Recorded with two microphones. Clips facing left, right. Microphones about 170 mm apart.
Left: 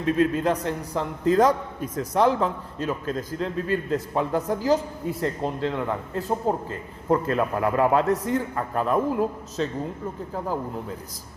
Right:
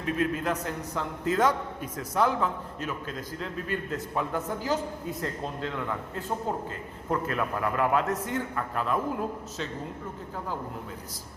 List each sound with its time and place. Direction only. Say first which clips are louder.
0.0 s a man's voice: left 6 dB; 30° left (ahead or behind)